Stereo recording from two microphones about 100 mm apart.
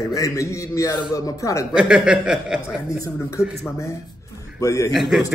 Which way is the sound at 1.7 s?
10° right (ahead or behind).